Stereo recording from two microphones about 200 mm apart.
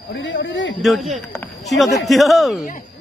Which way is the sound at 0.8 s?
Centre (ahead or behind).